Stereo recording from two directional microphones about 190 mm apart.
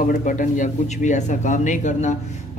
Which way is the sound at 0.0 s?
45° left (ahead or behind).